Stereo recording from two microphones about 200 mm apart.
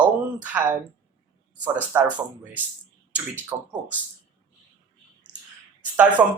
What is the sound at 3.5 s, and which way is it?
Speech, 15° right (ahead or behind).